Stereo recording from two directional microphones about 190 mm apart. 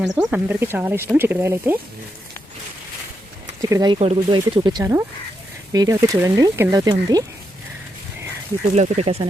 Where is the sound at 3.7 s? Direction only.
20° right (ahead or behind).